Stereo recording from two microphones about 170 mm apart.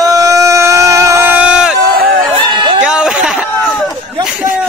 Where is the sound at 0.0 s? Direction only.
20° right (ahead or behind).